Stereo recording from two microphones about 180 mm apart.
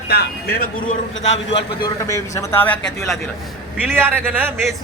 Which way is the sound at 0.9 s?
90° left.